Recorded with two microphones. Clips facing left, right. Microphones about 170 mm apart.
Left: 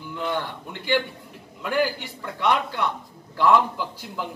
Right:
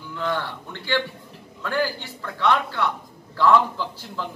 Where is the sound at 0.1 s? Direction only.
15° left (ahead or behind).